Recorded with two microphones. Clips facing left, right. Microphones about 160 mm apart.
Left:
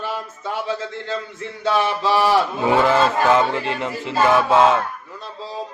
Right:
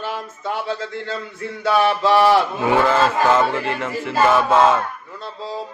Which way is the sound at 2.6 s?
20° left (ahead or behind).